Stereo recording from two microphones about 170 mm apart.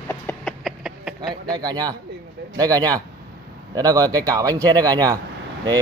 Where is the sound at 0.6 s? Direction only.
5° right (ahead or behind).